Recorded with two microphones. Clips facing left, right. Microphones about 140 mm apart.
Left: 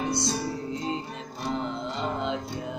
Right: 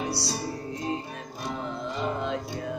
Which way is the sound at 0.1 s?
20° left (ahead or behind).